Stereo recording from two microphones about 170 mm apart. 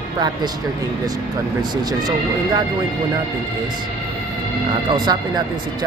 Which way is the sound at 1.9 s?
25° right (ahead or behind).